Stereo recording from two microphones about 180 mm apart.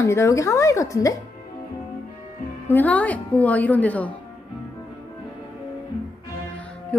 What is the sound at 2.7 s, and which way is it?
A woman's voice, 10° left (ahead or behind).